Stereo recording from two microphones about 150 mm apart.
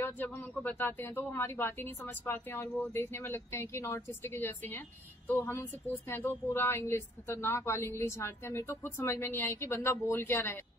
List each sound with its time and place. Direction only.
0.0 s a woman's voice: 10° left (ahead or behind)